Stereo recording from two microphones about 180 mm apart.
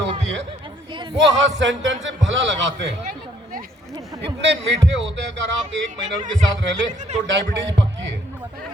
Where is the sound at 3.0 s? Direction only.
50° right (ahead or behind).